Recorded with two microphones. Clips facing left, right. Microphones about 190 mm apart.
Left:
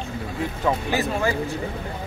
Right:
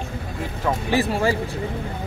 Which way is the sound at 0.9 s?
30° right (ahead or behind).